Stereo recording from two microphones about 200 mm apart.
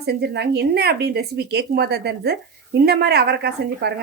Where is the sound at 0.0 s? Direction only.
55° right (ahead or behind).